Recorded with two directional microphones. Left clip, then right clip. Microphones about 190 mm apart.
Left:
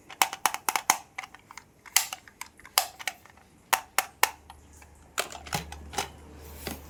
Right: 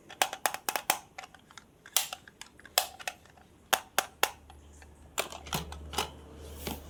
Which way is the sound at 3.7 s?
5° left (ahead or behind).